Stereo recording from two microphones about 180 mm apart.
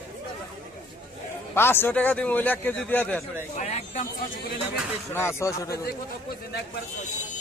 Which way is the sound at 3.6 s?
40° left (ahead or behind).